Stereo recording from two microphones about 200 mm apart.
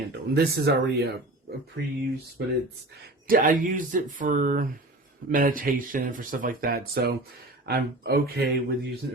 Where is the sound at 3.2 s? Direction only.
45° right (ahead or behind).